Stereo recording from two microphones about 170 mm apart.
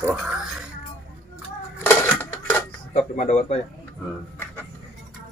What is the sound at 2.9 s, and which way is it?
Speech, 45° left (ahead or behind).